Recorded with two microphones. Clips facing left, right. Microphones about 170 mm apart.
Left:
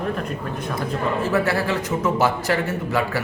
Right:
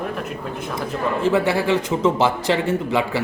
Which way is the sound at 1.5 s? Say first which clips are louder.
Right 3 dB; 20° right (ahead or behind).